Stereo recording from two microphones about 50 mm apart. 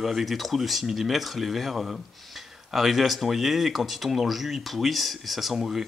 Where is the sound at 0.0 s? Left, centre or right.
Centre.